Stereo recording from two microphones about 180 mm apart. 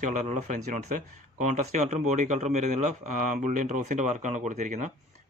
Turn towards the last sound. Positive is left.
turn(degrees=-40)  # may be behind; listen again after turning